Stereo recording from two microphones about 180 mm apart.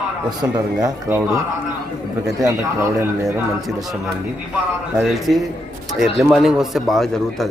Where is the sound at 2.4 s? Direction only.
15° right (ahead or behind).